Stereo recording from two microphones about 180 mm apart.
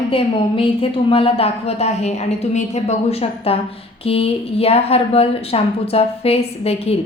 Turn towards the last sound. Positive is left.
turn(degrees=35)  # may be behind; listen again after turning